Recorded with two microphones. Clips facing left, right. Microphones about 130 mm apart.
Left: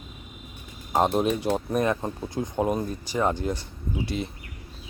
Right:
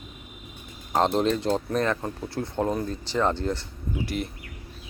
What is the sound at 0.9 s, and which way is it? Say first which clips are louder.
Speech: even; 10° left (ahead or behind).